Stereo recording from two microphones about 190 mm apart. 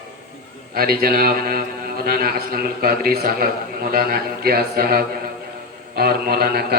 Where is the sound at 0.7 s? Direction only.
50° right (ahead or behind).